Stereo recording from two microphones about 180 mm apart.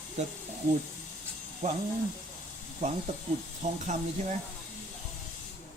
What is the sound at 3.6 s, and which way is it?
Speech, 40° right (ahead or behind).